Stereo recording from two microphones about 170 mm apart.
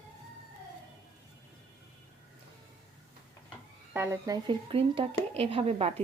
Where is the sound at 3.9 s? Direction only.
15° right (ahead or behind).